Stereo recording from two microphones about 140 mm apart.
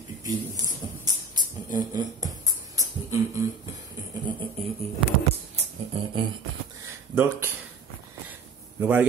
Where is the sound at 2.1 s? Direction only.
25° right (ahead or behind).